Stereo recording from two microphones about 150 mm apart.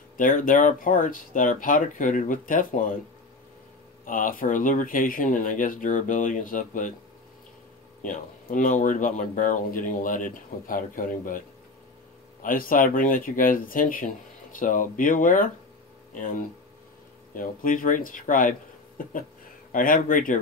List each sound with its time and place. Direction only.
0.2 s speech: 65° left (ahead or behind)
4.0 s speech: 65° left (ahead or behind)
8.0 s speech: 60° left (ahead or behind)